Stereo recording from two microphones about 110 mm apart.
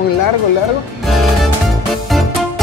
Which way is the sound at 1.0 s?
Centre (ahead or behind).